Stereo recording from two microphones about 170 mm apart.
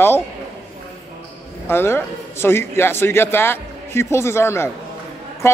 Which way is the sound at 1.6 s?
15° left (ahead or behind).